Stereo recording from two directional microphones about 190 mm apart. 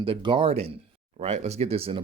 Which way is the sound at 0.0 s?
30° right (ahead or behind).